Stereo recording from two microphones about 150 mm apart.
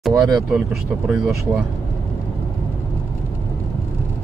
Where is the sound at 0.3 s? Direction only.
5° right (ahead or behind).